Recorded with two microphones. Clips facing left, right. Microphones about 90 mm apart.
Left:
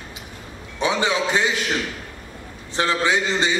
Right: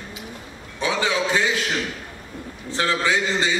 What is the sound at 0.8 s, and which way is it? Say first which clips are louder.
Speech: left 1 dB; 20° left (ahead or behind).